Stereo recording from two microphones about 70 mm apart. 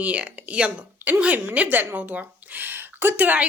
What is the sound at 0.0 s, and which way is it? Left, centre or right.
A woman's voice, right.